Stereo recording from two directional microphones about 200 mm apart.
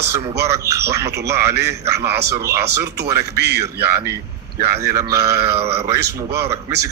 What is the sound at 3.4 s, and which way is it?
Speech, 55° right (ahead or behind).